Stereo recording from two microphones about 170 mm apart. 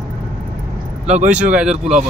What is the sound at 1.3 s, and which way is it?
Speech, 5° right (ahead or behind).